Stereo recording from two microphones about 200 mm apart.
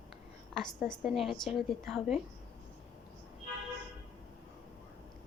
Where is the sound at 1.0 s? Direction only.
Centre (ahead or behind).